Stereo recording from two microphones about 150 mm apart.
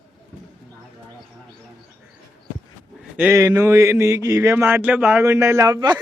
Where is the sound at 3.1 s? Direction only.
15° right (ahead or behind).